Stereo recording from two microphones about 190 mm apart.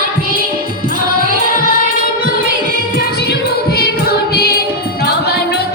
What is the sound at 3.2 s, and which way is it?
Music, 55° left (ahead or behind).